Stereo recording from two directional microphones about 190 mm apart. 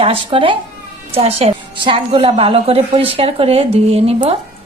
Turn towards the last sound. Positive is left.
turn(degrees=-30)  # may be behind; listen again after turning